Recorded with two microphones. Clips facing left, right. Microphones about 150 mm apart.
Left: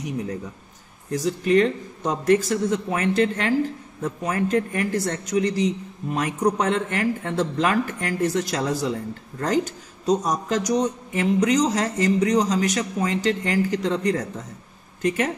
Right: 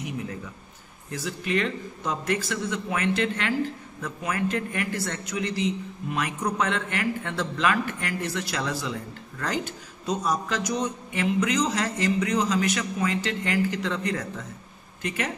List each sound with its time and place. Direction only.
1.1 s a man's voice: 40° left (ahead or behind)